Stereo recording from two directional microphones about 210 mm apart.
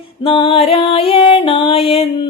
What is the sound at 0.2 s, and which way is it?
Music, 25° left (ahead or behind).